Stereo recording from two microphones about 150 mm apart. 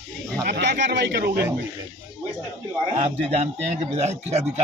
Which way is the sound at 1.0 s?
90° right.